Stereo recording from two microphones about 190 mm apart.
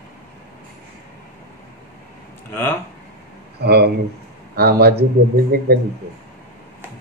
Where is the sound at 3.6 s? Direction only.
60° right (ahead or behind).